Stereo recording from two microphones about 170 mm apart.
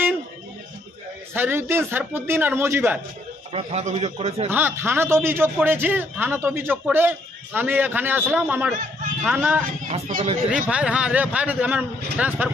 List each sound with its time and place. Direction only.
1.3 s a man's voice: 10° right (ahead or behind)
3.5 s a man's voice: 35° right (ahead or behind)
4.5 s a man's voice: 10° right (ahead or behind)
9.8 s speech: 45° right (ahead or behind)
10.5 s a man's voice: 5° right (ahead or behind)